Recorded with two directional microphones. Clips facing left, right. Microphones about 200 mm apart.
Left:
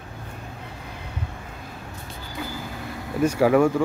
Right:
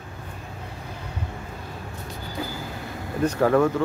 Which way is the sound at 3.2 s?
10° left (ahead or behind).